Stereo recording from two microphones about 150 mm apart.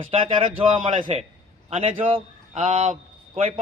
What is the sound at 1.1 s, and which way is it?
A man's voice, 45° right (ahead or behind).